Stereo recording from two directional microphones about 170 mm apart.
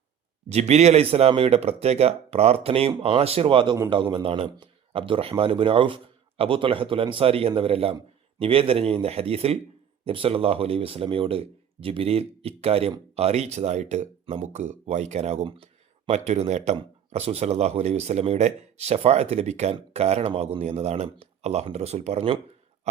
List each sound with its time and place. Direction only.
0.4 s speech: 40° right (ahead or behind)